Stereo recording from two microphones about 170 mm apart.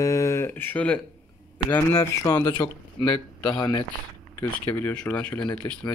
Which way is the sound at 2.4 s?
25° left (ahead or behind).